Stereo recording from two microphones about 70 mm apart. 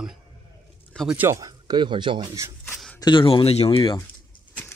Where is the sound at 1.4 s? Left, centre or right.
Right.